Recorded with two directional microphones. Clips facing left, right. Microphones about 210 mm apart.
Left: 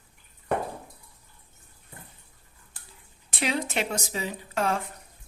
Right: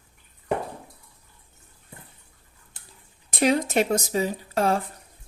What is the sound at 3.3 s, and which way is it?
Speech, 40° right (ahead or behind).